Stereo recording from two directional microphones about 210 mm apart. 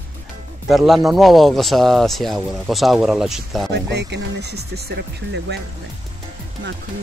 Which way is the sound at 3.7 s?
55° right (ahead or behind).